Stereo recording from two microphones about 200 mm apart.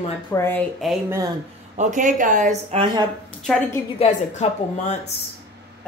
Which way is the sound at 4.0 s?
35° left (ahead or behind).